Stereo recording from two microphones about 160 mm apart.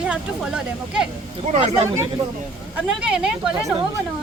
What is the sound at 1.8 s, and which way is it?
Speech, 15° right (ahead or behind).